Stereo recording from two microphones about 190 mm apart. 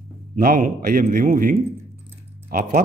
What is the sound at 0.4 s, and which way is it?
Speech, 45° right (ahead or behind).